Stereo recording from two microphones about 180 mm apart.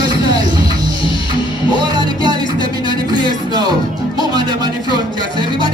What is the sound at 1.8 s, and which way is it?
Music, 25° right (ahead or behind).